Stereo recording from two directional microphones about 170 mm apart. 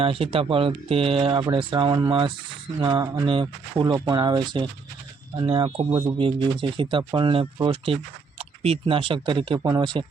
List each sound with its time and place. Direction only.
0.0 s speech: 35° right (ahead or behind)